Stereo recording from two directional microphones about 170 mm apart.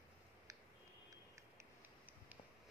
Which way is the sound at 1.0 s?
15° right (ahead or behind).